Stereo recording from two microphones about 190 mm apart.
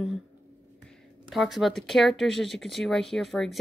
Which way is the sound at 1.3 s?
Centre (ahead or behind).